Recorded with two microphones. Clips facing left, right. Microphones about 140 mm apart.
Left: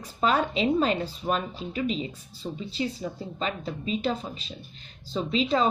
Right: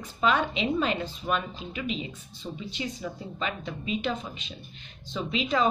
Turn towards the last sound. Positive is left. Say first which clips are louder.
# left 2 dB
turn(degrees=30)  # may be behind; listen again after turning